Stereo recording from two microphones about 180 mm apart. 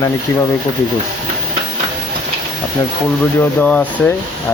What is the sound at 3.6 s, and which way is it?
Speech, 5° left (ahead or behind).